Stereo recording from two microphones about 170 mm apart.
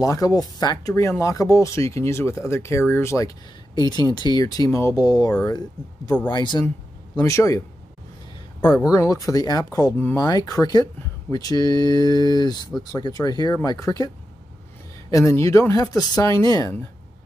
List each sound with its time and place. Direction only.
0.0 s speech: 20° left (ahead or behind)
8.9 s speech: 20° left (ahead or behind)